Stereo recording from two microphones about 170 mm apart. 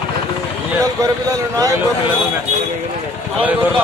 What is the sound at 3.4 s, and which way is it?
Speech, 10° right (ahead or behind).